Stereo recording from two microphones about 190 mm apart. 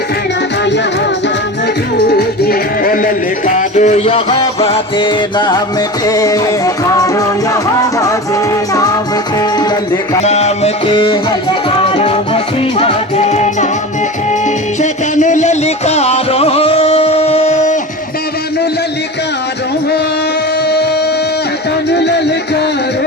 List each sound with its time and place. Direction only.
2.1 s music: 55° left (ahead or behind); by 8.1 s 15° left (ahead or behind)
10.2 s music: 35° left (ahead or behind)
14.8 s music: 40° left (ahead or behind)
21.8 s music: 65° left (ahead or behind)